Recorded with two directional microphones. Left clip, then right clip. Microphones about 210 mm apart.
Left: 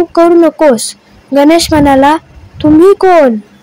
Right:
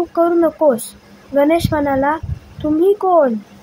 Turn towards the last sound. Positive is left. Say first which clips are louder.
# left 8 dB
turn(degrees=35)  # may be behind; listen again after turning